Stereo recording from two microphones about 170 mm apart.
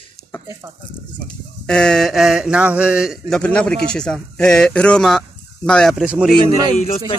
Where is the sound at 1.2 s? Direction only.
5° left (ahead or behind).